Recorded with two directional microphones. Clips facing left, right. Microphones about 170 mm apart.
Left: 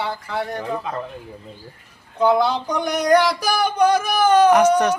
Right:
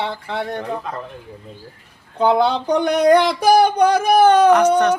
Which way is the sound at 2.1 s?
30° right (ahead or behind).